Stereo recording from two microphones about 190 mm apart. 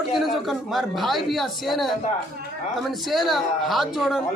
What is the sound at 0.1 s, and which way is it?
A man's voice, centre (ahead or behind).